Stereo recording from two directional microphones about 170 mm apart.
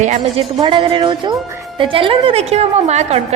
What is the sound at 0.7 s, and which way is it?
A woman's voice, 30° right (ahead or behind).